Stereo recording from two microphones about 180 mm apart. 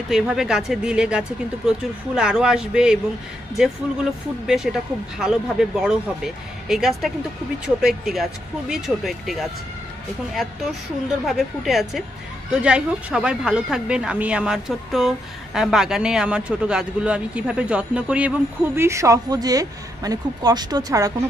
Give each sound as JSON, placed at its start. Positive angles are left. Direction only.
{"t": 0.1, "sound": "speech", "side_deg": -5}